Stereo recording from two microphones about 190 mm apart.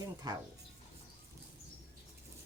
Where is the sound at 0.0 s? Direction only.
20° right (ahead or behind).